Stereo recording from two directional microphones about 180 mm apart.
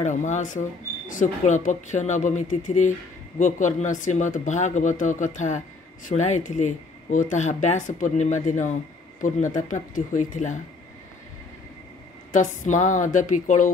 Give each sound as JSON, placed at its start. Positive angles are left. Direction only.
{"t": 0.0, "sound": "speech", "side_deg": 40}
{"t": 12.3, "sound": "speech", "side_deg": 45}